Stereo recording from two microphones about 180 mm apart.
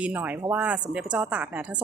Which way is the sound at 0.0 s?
10° right (ahead or behind).